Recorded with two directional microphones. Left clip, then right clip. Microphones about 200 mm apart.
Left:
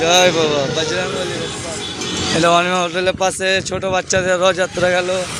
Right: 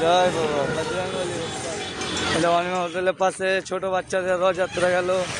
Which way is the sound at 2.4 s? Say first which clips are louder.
Left 9 dB; 5° left (ahead or behind).